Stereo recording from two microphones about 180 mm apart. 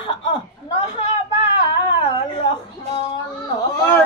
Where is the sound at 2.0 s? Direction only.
30° left (ahead or behind).